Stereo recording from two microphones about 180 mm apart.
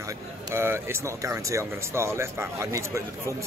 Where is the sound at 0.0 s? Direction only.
15° right (ahead or behind).